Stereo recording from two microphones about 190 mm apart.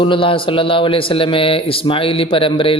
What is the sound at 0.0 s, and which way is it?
A man's voice, 25° left (ahead or behind).